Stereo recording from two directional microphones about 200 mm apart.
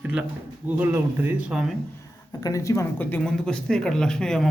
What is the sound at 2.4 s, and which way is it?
A man's voice, 15° left (ahead or behind).